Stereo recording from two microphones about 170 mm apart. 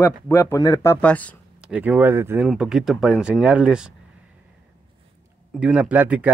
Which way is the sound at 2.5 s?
5° right (ahead or behind).